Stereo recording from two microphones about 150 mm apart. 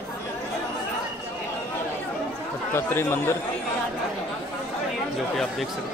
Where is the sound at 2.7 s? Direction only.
15° left (ahead or behind).